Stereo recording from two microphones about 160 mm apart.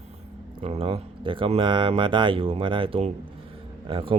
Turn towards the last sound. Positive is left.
turn(degrees=-35)  # may be behind; listen again after turning